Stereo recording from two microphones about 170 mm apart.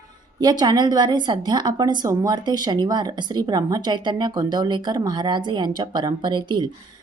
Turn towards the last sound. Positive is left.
turn(degrees=-25)  # may be behind; listen again after turning